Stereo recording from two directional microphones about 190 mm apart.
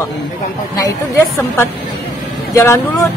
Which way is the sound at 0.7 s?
15° left (ahead or behind).